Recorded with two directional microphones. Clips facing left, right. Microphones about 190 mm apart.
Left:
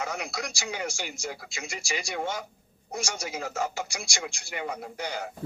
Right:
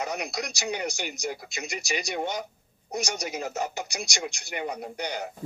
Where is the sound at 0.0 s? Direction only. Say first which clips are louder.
Right 2 dB; 20° right (ahead or behind).